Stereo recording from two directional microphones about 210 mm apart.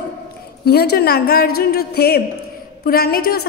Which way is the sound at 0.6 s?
50° left (ahead or behind).